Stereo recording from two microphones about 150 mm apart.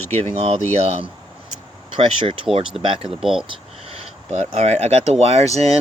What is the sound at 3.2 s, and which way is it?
Speech, centre (ahead or behind).